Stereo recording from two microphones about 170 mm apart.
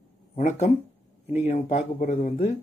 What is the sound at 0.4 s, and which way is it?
Speech, 40° left (ahead or behind).